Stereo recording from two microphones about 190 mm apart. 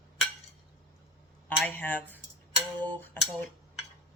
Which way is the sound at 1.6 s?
10° left (ahead or behind).